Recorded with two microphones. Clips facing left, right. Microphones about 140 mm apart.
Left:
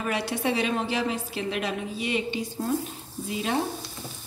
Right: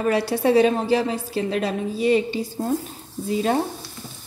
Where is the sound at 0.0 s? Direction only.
35° right (ahead or behind).